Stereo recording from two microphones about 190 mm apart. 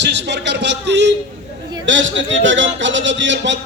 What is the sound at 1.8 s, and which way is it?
A man's voice, 75° right (ahead or behind).